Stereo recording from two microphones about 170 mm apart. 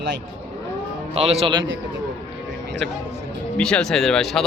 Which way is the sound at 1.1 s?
35° right (ahead or behind).